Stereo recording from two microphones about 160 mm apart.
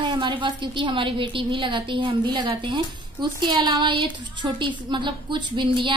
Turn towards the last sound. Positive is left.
turn(degrees=-30)  # may be behind; listen again after turning